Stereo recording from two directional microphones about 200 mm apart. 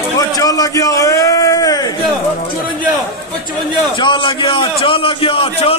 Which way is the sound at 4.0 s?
25° left (ahead or behind).